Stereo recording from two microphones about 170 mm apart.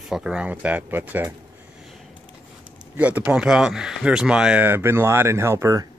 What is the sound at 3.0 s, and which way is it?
Speech, 10° right (ahead or behind).